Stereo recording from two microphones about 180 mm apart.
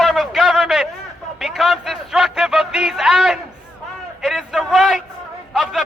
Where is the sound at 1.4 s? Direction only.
Centre (ahead or behind).